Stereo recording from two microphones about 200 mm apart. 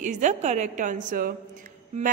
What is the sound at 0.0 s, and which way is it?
A woman's voice, 35° right (ahead or behind).